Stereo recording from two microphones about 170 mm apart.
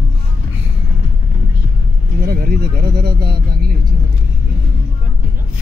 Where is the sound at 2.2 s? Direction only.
65° right (ahead or behind).